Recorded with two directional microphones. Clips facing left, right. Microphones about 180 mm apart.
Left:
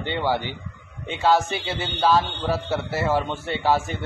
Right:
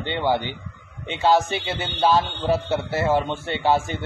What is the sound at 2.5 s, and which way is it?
A man's voice, 20° right (ahead or behind).